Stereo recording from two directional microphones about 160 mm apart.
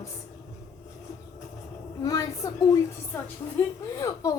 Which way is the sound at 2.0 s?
20° left (ahead or behind).